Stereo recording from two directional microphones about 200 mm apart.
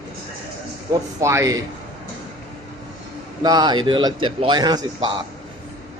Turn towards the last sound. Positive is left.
turn(degrees=-20)  # may be behind; listen again after turning